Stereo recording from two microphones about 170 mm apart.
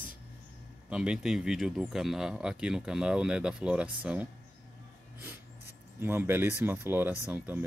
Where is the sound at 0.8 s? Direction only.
5° right (ahead or behind).